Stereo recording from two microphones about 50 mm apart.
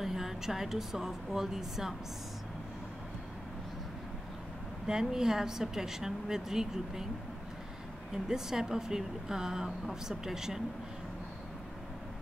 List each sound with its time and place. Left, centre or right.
0.0 s a woman's voice: centre
4.8 s speech: centre
8.1 s speech: centre